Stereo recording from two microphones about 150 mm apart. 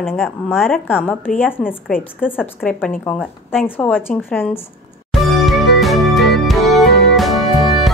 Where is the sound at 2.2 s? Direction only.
10° left (ahead or behind).